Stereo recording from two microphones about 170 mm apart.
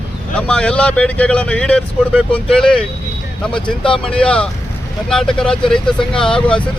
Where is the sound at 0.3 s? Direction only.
5° left (ahead or behind).